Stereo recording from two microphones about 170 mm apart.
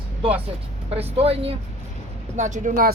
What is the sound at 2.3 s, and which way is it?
Speech, 45° right (ahead or behind).